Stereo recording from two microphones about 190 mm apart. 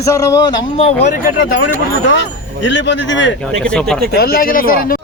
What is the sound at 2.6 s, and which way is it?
Speech, 70° left (ahead or behind).